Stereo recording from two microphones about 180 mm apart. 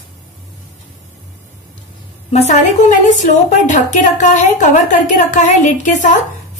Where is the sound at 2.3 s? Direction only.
40° left (ahead or behind).